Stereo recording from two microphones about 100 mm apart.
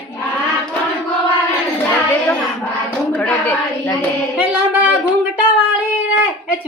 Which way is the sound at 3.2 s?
15° left (ahead or behind).